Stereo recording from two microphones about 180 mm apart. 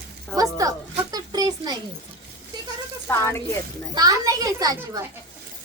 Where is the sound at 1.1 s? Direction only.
20° right (ahead or behind).